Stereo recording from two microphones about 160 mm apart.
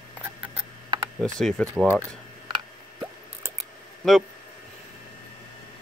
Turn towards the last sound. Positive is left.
turn(degrees=0)  # may be behind; listen again after turning